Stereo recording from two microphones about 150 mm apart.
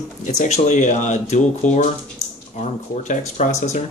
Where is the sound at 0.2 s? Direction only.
55° left (ahead or behind).